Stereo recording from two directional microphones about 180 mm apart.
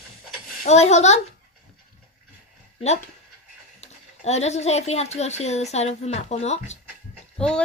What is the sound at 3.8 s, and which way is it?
Speech, 35° left (ahead or behind).